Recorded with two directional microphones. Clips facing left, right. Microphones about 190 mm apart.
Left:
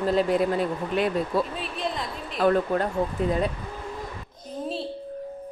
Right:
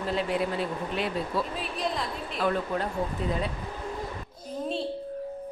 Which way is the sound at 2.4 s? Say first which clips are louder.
Left 6 dB; 50° left (ahead or behind).